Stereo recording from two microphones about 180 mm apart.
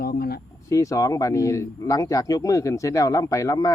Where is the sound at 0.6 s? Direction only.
20° left (ahead or behind).